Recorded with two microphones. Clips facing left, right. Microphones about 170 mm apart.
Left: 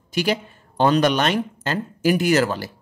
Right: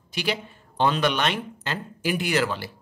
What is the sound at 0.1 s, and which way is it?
A woman's voice, 45° left (ahead or behind).